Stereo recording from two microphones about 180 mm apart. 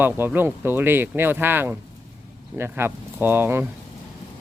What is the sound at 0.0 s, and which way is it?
Speech, 10° right (ahead or behind).